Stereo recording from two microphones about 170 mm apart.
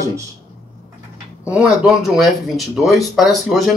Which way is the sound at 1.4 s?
5° right (ahead or behind).